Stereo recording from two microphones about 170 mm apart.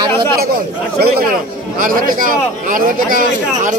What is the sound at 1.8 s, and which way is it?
A man's voice, 55° right (ahead or behind).